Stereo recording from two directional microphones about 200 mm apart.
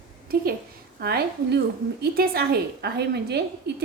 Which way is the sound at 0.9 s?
50° right (ahead or behind).